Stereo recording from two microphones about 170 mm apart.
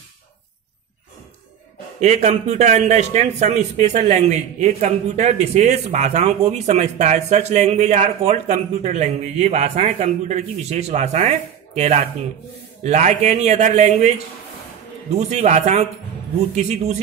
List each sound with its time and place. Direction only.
2.0 s a man's voice: 40° right (ahead or behind)
15.1 s a man's voice: 40° right (ahead or behind)